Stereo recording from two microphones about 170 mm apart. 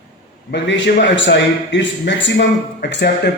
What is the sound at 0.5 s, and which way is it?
A man's voice, 90° left.